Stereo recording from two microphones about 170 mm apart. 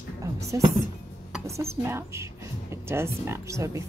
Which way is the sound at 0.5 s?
20° right (ahead or behind).